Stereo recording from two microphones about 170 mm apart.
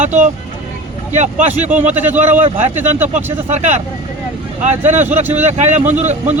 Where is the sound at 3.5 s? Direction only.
40° right (ahead or behind).